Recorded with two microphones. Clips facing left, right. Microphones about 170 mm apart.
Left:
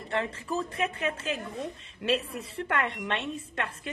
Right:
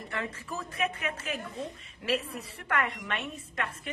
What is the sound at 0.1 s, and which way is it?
A woman's voice, 30° left (ahead or behind).